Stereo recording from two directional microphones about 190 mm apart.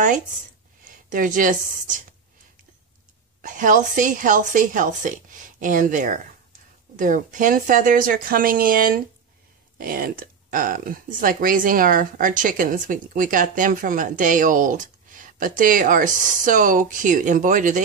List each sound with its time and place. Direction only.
1.1 s speech: 45° right (ahead or behind)
3.4 s speech: 45° right (ahead or behind)